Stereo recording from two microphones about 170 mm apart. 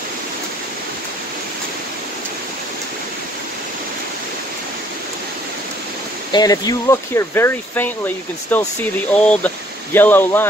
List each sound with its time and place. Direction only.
6.3 s speech: 20° left (ahead or behind)